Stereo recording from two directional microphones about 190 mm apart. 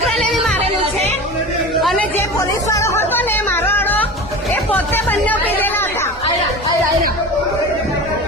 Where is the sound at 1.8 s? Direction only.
Centre (ahead or behind).